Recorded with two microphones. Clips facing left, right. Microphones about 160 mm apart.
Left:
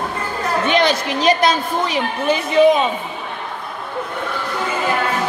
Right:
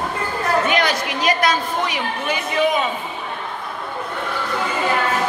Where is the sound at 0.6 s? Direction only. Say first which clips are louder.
Left 3 dB; 25° left (ahead or behind).